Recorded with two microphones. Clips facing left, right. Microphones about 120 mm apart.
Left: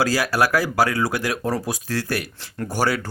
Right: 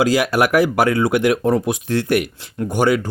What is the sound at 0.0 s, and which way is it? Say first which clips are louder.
Speech: right 4 dB; 20° right (ahead or behind).